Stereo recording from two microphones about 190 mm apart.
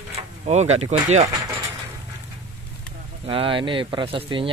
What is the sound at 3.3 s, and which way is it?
Speech, 25° right (ahead or behind).